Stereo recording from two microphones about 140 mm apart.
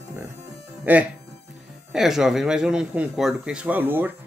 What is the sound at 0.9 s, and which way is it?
A man's voice, 10° right (ahead or behind).